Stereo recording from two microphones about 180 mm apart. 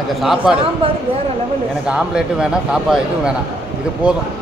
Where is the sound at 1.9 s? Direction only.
5° right (ahead or behind).